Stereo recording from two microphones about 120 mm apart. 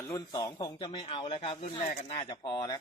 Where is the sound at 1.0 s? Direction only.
55° left (ahead or behind).